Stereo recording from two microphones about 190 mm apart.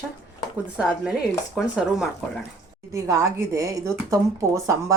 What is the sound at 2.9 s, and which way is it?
Speech, 15° right (ahead or behind).